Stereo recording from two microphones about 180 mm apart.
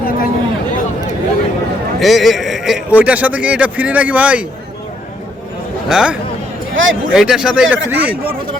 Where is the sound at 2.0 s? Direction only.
Centre (ahead or behind).